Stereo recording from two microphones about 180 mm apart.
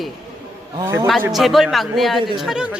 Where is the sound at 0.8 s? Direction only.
15° right (ahead or behind).